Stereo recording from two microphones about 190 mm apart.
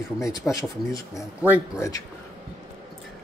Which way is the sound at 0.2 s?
15° left (ahead or behind).